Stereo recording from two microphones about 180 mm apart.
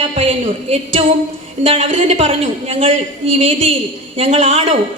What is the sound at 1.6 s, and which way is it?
A woman's voice, 30° right (ahead or behind).